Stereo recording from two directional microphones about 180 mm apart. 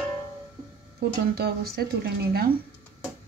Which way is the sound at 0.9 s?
60° right (ahead or behind).